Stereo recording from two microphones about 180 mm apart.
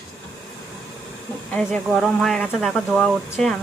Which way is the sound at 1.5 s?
Centre (ahead or behind).